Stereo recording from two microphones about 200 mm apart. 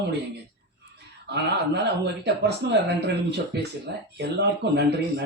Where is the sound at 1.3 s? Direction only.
55° right (ahead or behind).